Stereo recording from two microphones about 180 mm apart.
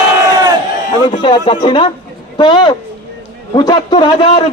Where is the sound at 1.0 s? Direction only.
25° left (ahead or behind).